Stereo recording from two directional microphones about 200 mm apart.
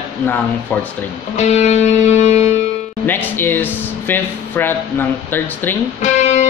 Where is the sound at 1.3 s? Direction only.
35° left (ahead or behind).